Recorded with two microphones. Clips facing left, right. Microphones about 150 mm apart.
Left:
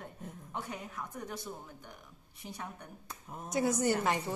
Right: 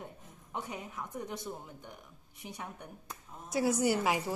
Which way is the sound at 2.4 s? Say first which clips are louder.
Even; 10° right (ahead or behind).